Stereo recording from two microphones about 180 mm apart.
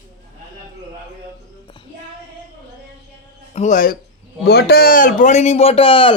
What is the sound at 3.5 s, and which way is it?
Speech, 40° left (ahead or behind).